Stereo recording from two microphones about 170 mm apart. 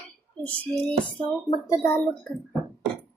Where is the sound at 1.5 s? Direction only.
20° left (ahead or behind).